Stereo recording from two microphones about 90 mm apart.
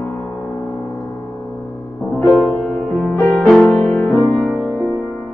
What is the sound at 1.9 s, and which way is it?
Music, 10° left (ahead or behind).